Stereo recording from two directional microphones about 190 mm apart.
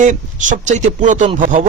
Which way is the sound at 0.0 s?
40° right (ahead or behind).